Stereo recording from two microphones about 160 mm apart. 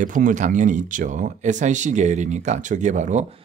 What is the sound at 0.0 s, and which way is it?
Speech, 55° right (ahead or behind).